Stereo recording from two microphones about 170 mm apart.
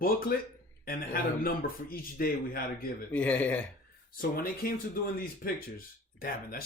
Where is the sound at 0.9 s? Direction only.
60° left (ahead or behind).